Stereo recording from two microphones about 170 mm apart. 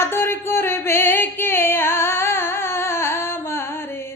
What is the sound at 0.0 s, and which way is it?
Music, 15° left (ahead or behind).